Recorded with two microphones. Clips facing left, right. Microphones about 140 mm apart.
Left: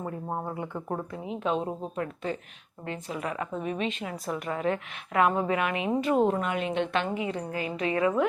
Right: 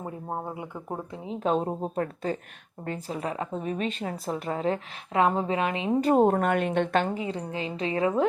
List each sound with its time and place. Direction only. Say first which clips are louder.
0.0 s speech: left 1 dB; 20° right (ahead or behind)
1.1 s a woman's voice: even; 25° right (ahead or behind)
1.4 s a woman's voice: right 3 dB; 40° right (ahead or behind)
6.0 s a woman's voice: right 4 dB; 40° right (ahead or behind)